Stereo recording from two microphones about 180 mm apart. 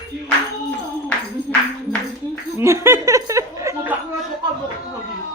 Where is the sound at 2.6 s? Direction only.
15° right (ahead or behind).